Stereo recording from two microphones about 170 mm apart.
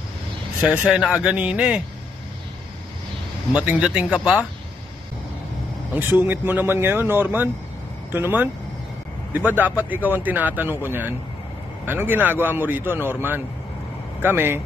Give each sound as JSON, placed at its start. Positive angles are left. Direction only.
{"t": 0.6, "sound": "speech", "side_deg": -5}
{"t": 3.5, "sound": "a man's voice", "side_deg": -10}
{"t": 5.9, "sound": "a man's voice", "side_deg": -10}